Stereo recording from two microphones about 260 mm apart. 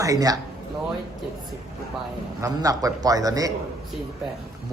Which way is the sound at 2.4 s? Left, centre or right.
Centre.